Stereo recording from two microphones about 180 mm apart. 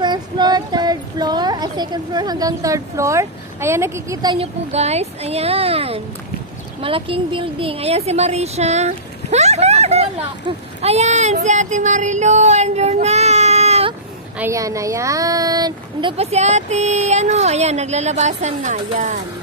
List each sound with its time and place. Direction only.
0.0 s speech: 25° right (ahead or behind)
4.4 s speech: 35° right (ahead or behind)
11.4 s child singing: 40° right (ahead or behind)
14.4 s speech: 15° right (ahead or behind); by 19.1 s 40° right (ahead or behind)